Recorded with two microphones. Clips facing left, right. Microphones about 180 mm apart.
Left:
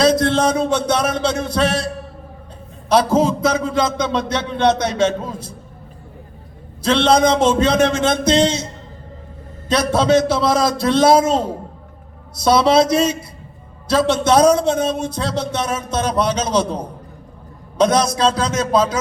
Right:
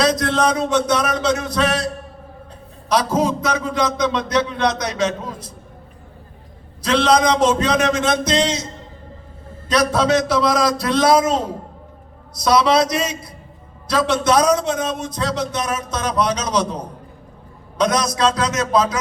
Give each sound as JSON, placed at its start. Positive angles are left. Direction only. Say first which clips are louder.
{"t": 0.0, "sound": "a man's voice", "louder": "left 3 dB", "side_deg": 30}
{"t": 2.9, "sound": "a man's voice", "louder": "left 3 dB", "side_deg": 30}
{"t": 6.8, "sound": "a man's voice", "louder": "left 2 dB", "side_deg": 30}
{"t": 9.6, "sound": "a man's voice", "louder": "left 1 dB", "side_deg": 30}
{"t": 17.7, "sound": "a man's voice", "louder": "left 3 dB", "side_deg": 30}